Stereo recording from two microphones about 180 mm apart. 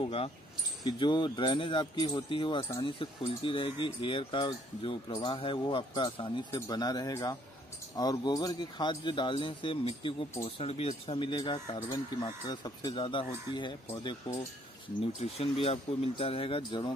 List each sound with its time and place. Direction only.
0.0 s speech: 30° left (ahead or behind)